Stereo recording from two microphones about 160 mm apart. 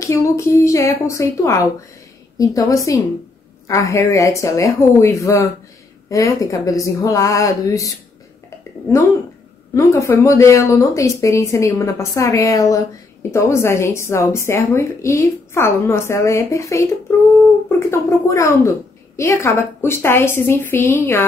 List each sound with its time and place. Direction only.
0.0 s speech: 20° left (ahead or behind)
9.8 s speech: 20° left (ahead or behind)